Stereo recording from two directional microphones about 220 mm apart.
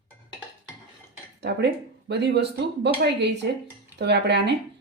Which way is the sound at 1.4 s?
50° right (ahead or behind).